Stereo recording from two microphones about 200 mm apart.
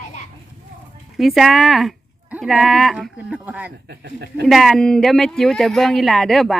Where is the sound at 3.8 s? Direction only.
55° right (ahead or behind).